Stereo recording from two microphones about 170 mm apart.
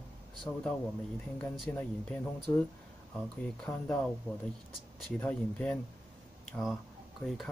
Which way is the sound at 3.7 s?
20° left (ahead or behind).